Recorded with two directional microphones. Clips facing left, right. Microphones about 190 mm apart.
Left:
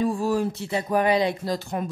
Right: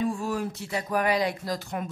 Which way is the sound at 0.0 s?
35° left (ahead or behind).